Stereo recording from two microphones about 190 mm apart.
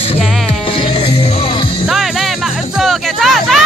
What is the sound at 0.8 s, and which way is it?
Music, 25° left (ahead or behind).